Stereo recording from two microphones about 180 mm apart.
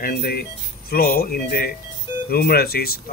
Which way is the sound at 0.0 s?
60° left (ahead or behind).